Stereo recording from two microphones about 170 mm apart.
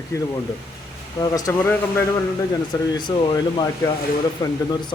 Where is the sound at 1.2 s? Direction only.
20° left (ahead or behind).